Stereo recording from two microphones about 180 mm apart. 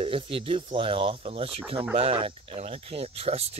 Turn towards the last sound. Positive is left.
turn(degrees=-35)  # may be behind; listen again after turning